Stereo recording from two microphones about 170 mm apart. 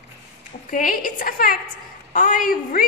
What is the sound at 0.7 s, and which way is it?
A woman's voice, 55° left (ahead or behind).